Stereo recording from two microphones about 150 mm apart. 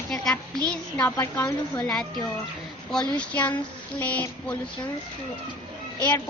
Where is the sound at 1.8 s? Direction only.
5° left (ahead or behind).